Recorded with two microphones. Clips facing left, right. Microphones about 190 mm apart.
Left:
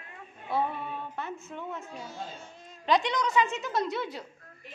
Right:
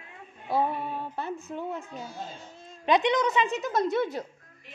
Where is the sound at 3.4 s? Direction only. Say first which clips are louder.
Right 3 dB; 40° right (ahead or behind).